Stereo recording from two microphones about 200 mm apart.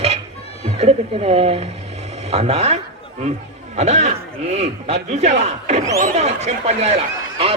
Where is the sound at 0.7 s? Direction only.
30° right (ahead or behind).